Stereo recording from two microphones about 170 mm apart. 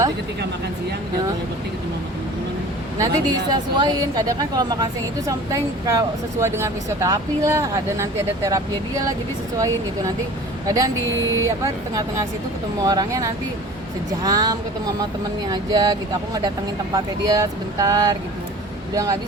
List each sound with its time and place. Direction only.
3.0 s a woman's voice: 25° right (ahead or behind)
10.7 s a woman's voice: 20° right (ahead or behind)